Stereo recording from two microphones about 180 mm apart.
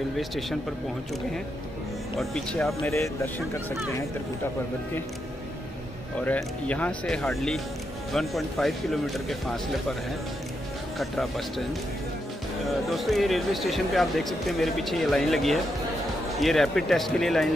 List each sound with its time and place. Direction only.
0.2 s speech: centre (ahead or behind)
2.1 s speech: 5° left (ahead or behind)
2.8 s speech: 15° left (ahead or behind)
6.2 s speech: 10° left (ahead or behind)
11.0 s speech: centre (ahead or behind)
12.6 s speech: centre (ahead or behind)